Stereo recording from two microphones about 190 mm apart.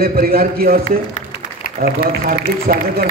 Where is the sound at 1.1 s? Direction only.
40° left (ahead or behind).